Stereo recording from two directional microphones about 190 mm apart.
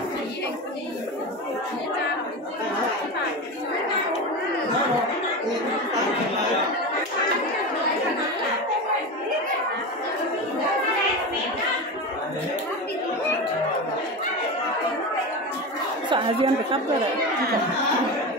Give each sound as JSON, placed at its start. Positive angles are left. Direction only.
{"t": 16.1, "sound": "speech", "side_deg": -25}